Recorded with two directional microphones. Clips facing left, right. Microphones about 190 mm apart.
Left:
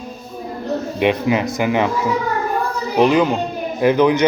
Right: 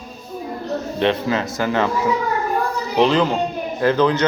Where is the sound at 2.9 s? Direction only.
10° left (ahead or behind).